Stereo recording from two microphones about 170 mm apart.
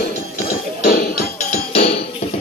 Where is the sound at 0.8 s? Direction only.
60° left (ahead or behind).